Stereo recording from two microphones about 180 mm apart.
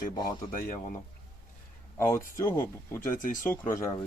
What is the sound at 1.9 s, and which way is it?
Speech, 15° left (ahead or behind).